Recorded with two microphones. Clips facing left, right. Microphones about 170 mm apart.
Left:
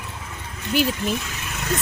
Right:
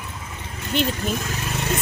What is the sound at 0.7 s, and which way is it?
Speech, 5° left (ahead or behind).